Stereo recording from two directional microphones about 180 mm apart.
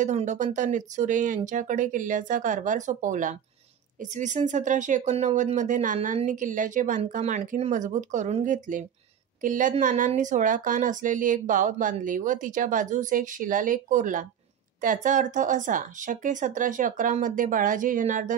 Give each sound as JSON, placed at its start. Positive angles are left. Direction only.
{"t": 0.0, "sound": "speech", "side_deg": -40}